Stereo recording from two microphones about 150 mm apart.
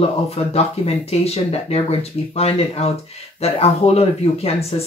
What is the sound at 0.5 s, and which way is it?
Speech, 45° left (ahead or behind).